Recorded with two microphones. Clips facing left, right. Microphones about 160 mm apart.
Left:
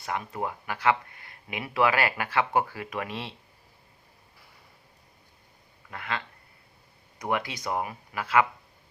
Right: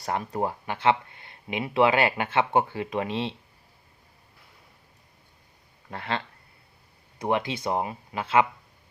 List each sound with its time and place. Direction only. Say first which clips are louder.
0.0 s speech: right 4 dB; 35° right (ahead or behind)
5.9 s speech: right 3 dB; 30° right (ahead or behind)